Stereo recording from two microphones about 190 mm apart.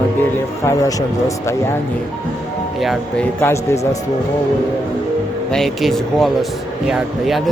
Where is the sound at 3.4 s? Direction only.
15° left (ahead or behind).